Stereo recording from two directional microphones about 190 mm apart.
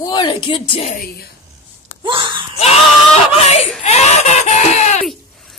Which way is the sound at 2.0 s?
25° right (ahead or behind).